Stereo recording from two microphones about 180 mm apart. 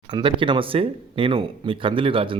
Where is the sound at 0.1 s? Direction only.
25° right (ahead or behind).